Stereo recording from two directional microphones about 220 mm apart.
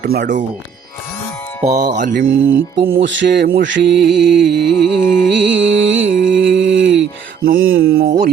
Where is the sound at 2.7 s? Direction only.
50° right (ahead or behind).